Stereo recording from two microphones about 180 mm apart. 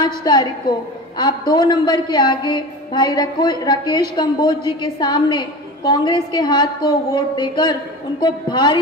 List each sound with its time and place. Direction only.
0.0 s a man's voice: 25° left (ahead or behind)